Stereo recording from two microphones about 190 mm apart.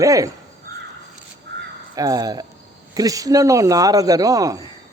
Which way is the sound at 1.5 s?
65° right (ahead or behind).